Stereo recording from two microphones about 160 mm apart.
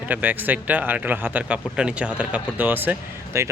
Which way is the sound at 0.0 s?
10° right (ahead or behind).